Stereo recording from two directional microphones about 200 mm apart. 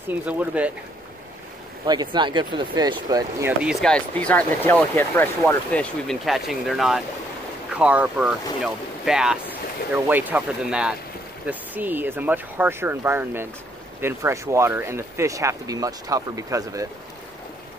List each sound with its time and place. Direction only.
0.1 s speech: 10° right (ahead or behind)
1.9 s speech: 20° right (ahead or behind)
3.8 s speech: 5° left (ahead or behind); by 16.8 s 15° right (ahead or behind)